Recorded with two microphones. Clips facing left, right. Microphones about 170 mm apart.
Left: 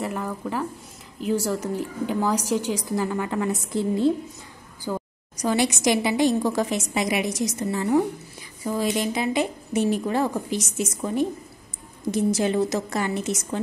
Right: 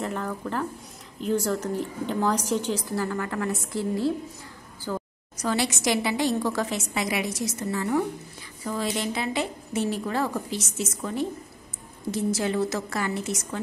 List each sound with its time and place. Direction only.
0.0 s a woman's voice: 5° left (ahead or behind)